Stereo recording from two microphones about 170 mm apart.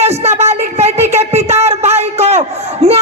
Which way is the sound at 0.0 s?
40° right (ahead or behind).